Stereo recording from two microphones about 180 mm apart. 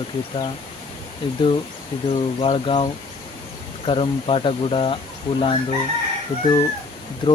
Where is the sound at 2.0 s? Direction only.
30° left (ahead or behind).